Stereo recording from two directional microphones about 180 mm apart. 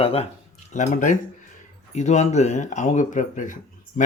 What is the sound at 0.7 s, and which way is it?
Speech, 45° left (ahead or behind).